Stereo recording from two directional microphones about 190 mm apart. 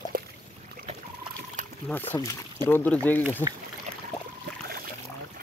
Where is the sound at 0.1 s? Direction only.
50° right (ahead or behind).